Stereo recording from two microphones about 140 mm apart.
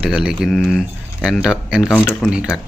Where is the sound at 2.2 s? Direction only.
5° right (ahead or behind).